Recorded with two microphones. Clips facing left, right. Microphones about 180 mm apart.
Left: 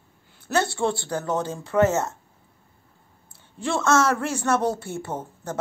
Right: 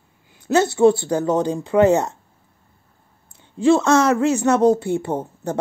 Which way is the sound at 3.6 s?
15° right (ahead or behind).